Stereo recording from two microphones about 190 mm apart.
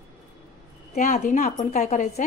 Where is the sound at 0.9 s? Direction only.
40° left (ahead or behind).